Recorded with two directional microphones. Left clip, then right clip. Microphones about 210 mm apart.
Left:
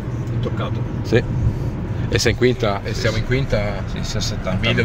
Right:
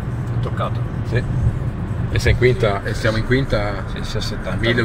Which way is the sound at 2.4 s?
30° left (ahead or behind).